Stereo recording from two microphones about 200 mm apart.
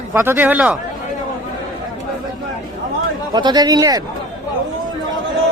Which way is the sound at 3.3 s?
20° right (ahead or behind).